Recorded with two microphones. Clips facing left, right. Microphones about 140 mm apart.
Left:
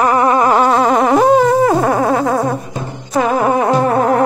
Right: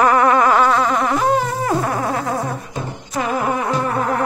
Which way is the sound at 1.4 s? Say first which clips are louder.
Left 9 dB; 90° left.